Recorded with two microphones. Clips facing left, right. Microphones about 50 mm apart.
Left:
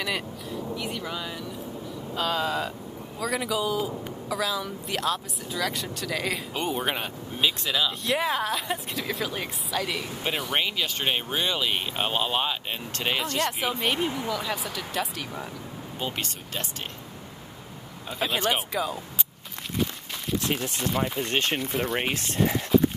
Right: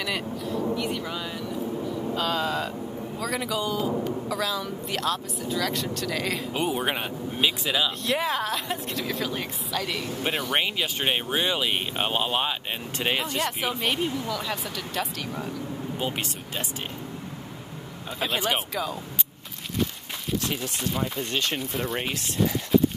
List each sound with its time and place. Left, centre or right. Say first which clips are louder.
0.0 s a woman's voice: right 1 dB; centre
8.0 s a woman's voice: even; centre
10.5 s a woman's voice: right 1 dB; centre
16.0 s speech: left 1 dB; centre
18.2 s a woman's voice: left 1 dB; centre
20.4 s speech: left 1 dB; left
21.5 s a woman's voice: left 2 dB; centre
22.1 s speech: left 1 dB; left